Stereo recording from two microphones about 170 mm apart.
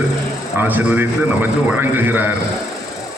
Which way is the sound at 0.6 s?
10° right (ahead or behind).